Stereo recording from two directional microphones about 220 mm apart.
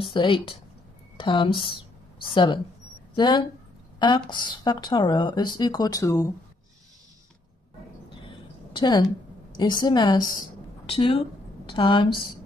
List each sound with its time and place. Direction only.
0.0 s a woman's voice: 20° left (ahead or behind)
8.7 s a woman's voice: 20° left (ahead or behind)